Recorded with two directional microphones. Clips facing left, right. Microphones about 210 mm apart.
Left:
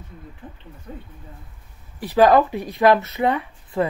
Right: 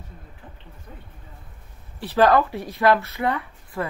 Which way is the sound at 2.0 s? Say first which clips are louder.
Left 3 dB; 15° left (ahead or behind).